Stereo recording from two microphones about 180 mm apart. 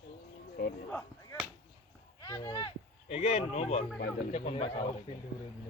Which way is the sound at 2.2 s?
20° left (ahead or behind).